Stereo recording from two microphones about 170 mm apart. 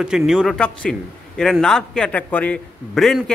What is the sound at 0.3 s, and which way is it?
A man's voice, centre (ahead or behind).